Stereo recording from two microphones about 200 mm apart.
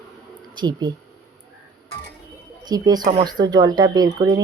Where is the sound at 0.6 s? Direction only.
20° right (ahead or behind).